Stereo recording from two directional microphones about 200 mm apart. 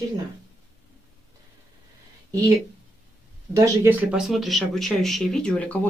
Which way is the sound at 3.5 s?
15° right (ahead or behind).